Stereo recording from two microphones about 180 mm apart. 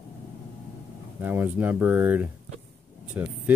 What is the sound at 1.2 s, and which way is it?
Speech, 10° right (ahead or behind).